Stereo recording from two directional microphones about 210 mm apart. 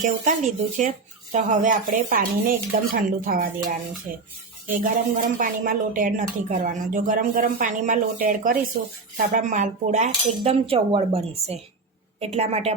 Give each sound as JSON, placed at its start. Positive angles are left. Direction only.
{"t": 0.0, "sound": "speech", "side_deg": -35}
{"t": 4.1, "sound": "music", "side_deg": -45}
{"t": 4.6, "sound": "a woman's voice", "side_deg": -40}